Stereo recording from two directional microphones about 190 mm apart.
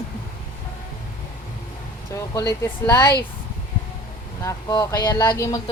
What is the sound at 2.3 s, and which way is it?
Speech, 15° left (ahead or behind).